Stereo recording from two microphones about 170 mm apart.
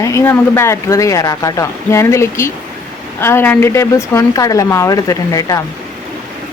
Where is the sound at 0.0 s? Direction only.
15° left (ahead or behind).